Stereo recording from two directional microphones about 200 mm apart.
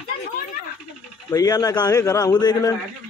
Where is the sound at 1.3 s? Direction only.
15° left (ahead or behind).